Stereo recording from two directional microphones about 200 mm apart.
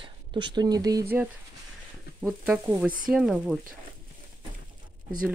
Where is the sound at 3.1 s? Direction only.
Centre (ahead or behind).